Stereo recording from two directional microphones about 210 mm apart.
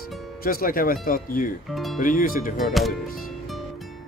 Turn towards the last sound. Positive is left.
turn(degrees=0)  # may be behind; listen again after turning